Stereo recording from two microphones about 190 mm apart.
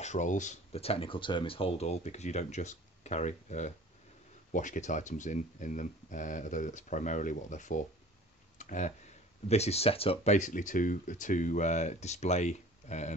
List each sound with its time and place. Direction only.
0.0 s speech: 40° left (ahead or behind)
8.5 s a sound: 40° left (ahead or behind)
9.5 s speech: 35° left (ahead or behind)